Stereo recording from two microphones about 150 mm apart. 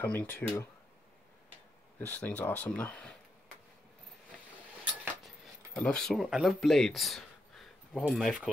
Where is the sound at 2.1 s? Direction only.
10° left (ahead or behind).